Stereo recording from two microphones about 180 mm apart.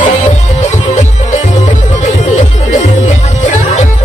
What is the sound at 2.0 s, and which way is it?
Music, 40° left (ahead or behind).